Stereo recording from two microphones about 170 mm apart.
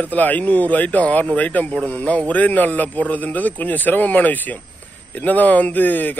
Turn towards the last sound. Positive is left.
turn(degrees=10)  # may be behind; listen again after turning